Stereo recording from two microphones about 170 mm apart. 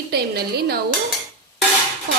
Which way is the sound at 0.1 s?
70° right (ahead or behind).